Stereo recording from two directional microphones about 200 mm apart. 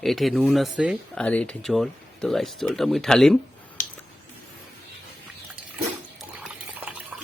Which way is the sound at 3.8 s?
45° left (ahead or behind).